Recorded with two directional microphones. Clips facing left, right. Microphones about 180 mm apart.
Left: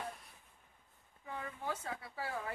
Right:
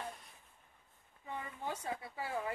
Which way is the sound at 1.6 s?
20° right (ahead or behind).